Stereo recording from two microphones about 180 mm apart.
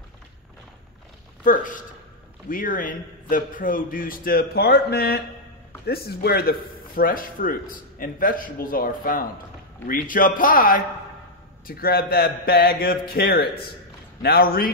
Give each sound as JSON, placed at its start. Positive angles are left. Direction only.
{"t": 1.4, "sound": "a man's voice", "side_deg": 50}